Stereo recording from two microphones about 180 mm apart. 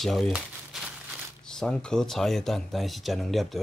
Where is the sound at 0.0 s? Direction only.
Centre (ahead or behind).